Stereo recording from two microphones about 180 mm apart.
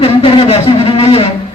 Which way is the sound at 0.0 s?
30° left (ahead or behind).